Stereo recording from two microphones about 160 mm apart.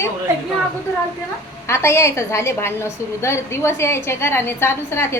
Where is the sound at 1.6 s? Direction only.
15° left (ahead or behind).